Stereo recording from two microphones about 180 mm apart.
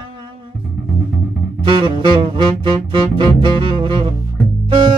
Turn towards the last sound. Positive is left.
turn(degrees=-30)  # may be behind; listen again after turning